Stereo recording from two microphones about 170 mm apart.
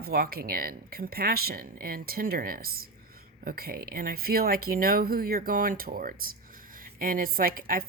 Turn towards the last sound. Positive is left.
turn(degrees=-55)  # may be behind; listen again after turning